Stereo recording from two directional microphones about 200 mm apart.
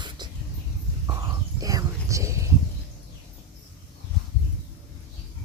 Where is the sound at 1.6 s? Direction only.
15° right (ahead or behind).